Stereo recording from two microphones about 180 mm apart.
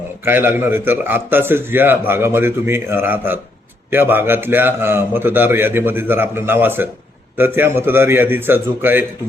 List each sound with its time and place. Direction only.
0.3 s a man's voice: 10° right (ahead or behind)